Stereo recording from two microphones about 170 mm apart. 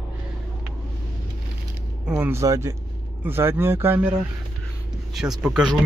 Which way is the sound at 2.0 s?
10° right (ahead or behind).